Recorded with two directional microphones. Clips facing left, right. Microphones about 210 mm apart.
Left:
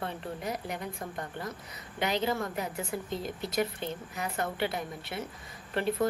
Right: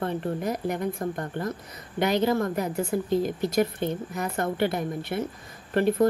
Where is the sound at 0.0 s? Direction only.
50° right (ahead or behind).